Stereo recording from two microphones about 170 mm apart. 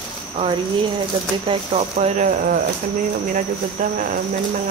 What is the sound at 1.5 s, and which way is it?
Speech, 45° right (ahead or behind).